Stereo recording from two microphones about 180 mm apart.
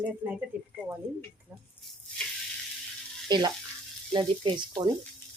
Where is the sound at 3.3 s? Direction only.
25° right (ahead or behind).